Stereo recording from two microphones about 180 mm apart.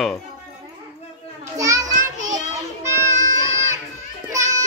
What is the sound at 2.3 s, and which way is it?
Children playing, 15° right (ahead or behind).